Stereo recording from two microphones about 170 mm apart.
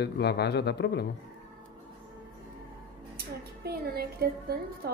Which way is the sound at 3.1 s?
65° right (ahead or behind).